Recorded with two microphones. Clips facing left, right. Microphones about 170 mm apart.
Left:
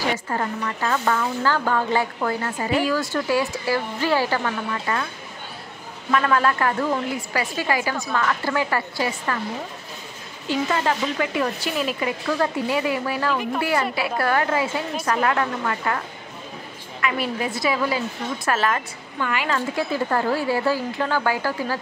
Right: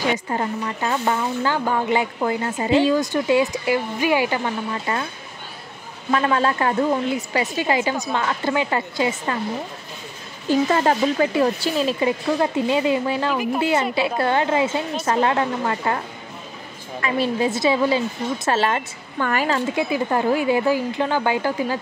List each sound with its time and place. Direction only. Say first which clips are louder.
0.1 s speech: right 2 dB; 20° right (ahead or behind)
6.1 s speech: even; 25° right (ahead or behind)
10.5 s speech: right 5 dB; 35° right (ahead or behind)
17.0 s speech: right 4 dB; 30° right (ahead or behind)
19.1 s a woman's voice: right 4 dB; 45° right (ahead or behind)
19.5 s speech: right 2 dB; 20° right (ahead or behind)